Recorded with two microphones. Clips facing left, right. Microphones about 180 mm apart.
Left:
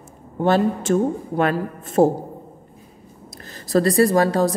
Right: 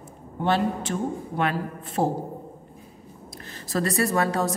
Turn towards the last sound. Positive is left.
turn(degrees=35)  # may be behind; listen again after turning